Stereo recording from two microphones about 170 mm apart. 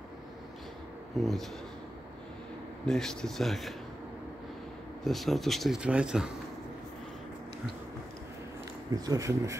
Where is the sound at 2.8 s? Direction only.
5° left (ahead or behind).